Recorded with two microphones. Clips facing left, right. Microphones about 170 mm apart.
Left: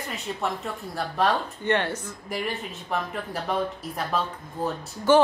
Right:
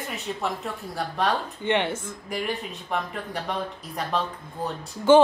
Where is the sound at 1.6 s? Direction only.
20° right (ahead or behind).